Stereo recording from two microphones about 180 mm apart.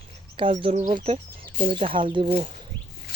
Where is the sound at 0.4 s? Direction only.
30° right (ahead or behind).